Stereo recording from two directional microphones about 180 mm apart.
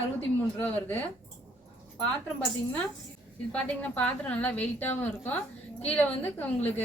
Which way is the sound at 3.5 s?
10° left (ahead or behind).